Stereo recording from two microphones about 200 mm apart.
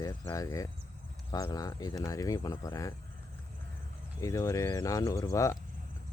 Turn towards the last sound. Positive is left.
turn(degrees=15)  # may be behind; listen again after turning